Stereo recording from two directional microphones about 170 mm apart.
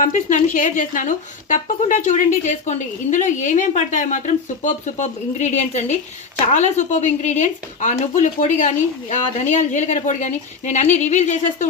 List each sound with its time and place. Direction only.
0.0 s a woman's voice: 50° left (ahead or behind)